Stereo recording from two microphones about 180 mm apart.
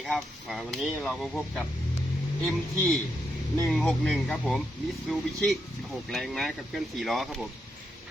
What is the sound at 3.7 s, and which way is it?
Speech, 5° left (ahead or behind).